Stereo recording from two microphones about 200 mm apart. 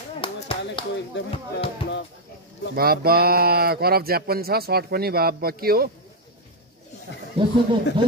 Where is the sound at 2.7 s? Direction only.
50° right (ahead or behind).